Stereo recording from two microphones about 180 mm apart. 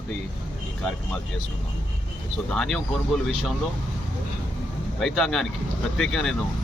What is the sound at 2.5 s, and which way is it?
Speech, 5° left (ahead or behind).